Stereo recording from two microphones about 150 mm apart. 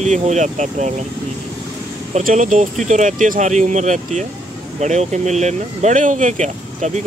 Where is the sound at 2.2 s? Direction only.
60° right (ahead or behind).